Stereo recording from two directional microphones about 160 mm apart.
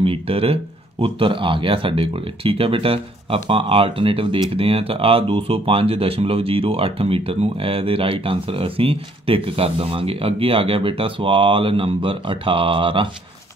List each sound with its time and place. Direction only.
0.0 s speech: 35° right (ahead or behind)